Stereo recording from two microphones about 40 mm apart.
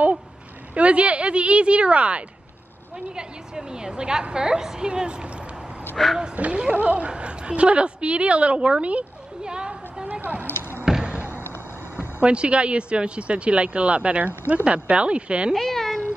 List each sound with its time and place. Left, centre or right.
0.7 s speech: right
3.2 s speech: centre
6.0 s speech: centre
6.3 s a woman's voice: right
10.5 s a sound: left
12.0 s speech: right
15.5 s cat: centre